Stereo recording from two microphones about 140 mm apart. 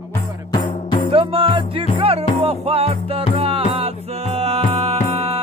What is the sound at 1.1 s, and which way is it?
Music, 40° right (ahead or behind).